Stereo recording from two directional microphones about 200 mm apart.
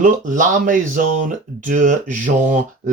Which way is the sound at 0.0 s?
40° right (ahead or behind).